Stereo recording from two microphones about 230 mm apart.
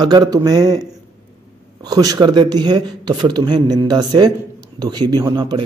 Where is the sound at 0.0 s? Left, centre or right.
Centre.